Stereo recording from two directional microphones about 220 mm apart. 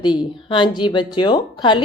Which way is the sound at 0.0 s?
20° left (ahead or behind).